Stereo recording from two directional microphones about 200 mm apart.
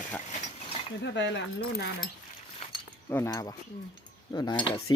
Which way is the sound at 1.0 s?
60° left (ahead or behind).